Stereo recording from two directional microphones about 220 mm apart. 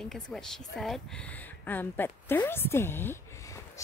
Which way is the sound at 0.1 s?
Centre (ahead or behind).